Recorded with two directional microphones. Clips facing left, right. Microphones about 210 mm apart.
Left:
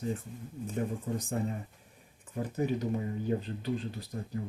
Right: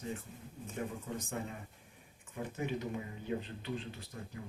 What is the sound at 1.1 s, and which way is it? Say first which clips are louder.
Speech: left 7 dB; 35° left (ahead or behind).